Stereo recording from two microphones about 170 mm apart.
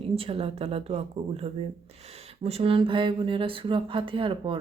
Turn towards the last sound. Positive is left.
turn(degrees=-30)  # may be behind; listen again after turning